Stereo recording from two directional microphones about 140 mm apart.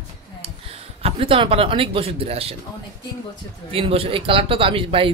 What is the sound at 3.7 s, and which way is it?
Speech, 40° right (ahead or behind).